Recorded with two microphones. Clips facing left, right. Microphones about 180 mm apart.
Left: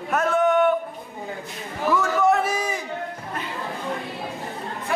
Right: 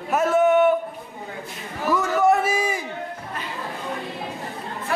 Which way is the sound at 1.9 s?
5° right (ahead or behind).